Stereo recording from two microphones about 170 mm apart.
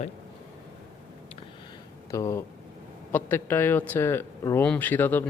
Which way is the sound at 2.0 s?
20° left (ahead or behind).